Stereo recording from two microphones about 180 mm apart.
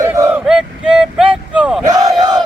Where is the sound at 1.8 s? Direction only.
20° right (ahead or behind).